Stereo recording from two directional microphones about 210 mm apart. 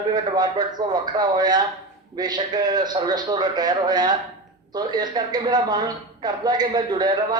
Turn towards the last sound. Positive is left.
turn(degrees=-20)  # may be behind; listen again after turning